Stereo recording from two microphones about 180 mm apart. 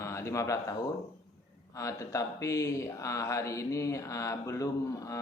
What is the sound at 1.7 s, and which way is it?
Speech, 15° left (ahead or behind).